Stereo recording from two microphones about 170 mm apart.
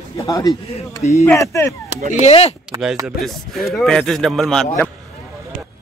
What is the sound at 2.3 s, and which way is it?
Speech, 35° left (ahead or behind).